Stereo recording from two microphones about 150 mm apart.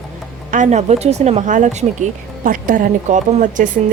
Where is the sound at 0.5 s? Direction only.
55° right (ahead or behind).